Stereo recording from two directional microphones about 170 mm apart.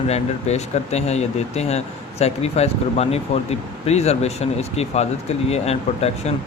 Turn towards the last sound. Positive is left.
turn(degrees=40)  # may be behind; listen again after turning